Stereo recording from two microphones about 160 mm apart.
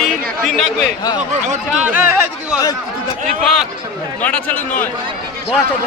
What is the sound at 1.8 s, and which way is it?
Chatter, 10° right (ahead or behind).